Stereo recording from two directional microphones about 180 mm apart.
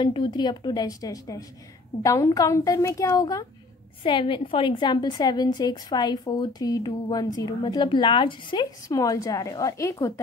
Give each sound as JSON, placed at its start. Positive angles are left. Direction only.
{"t": 0.0, "sound": "a woman's voice", "side_deg": 25}
{"t": 4.0, "sound": "a woman's voice", "side_deg": 30}